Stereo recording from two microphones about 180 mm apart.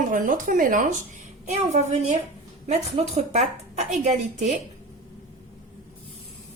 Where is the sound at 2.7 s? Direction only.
35° right (ahead or behind).